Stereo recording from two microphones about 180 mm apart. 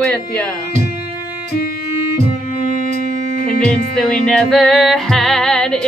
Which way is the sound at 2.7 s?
45° right (ahead or behind).